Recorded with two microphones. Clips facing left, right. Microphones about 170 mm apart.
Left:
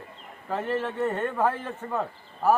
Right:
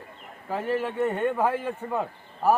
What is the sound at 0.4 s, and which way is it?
A man's voice, 5° right (ahead or behind).